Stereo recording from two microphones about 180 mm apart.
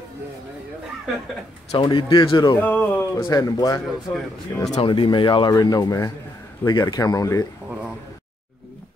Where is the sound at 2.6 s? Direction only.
10° left (ahead or behind).